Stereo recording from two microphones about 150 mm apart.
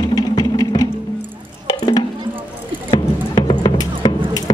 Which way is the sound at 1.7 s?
25° left (ahead or behind).